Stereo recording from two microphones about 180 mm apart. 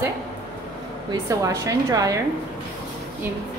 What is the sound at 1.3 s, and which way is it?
Speech, 20° right (ahead or behind).